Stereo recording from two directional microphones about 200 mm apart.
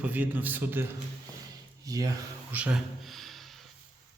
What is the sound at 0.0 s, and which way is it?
Speech, 10° right (ahead or behind).